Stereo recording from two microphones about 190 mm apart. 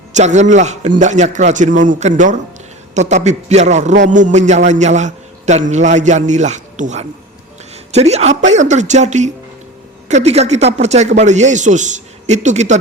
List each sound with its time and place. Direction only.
0.1 s a man's voice: 40° right (ahead or behind)